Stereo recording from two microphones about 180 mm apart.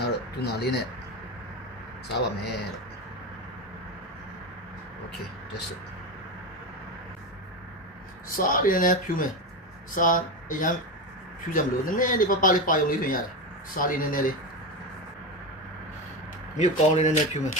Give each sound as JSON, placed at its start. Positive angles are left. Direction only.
{"t": 0.0, "sound": "a sound", "side_deg": 65}
{"t": 2.1, "sound": "speech", "side_deg": 65}
{"t": 8.4, "sound": "speech", "side_deg": 50}
{"t": 16.6, "sound": "speech", "side_deg": 40}